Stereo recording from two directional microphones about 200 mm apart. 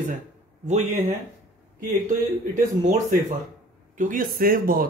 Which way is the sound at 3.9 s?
40° right (ahead or behind).